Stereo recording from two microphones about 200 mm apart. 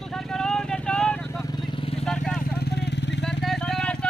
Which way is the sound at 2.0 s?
5° left (ahead or behind).